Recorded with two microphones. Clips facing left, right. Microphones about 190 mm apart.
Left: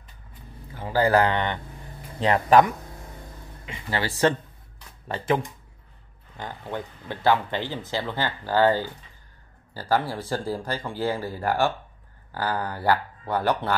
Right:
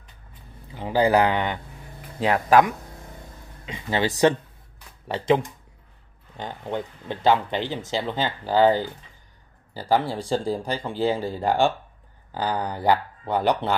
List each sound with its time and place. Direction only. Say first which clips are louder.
0.7 s speech: right 1 dB; 15° right (ahead or behind)
3.6 s speech: right 4 dB; 20° right (ahead or behind)